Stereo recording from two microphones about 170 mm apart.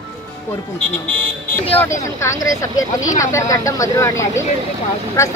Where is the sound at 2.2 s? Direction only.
20° left (ahead or behind).